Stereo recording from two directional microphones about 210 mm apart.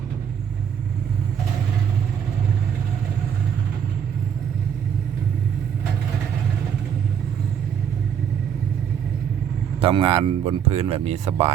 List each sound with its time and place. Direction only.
9.8 s speech: 25° right (ahead or behind)